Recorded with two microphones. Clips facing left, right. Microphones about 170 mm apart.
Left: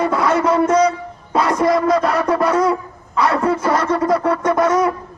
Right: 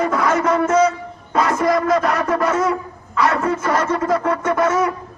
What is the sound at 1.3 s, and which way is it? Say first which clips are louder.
Shofar: left 1 dB; 30° left (ahead or behind).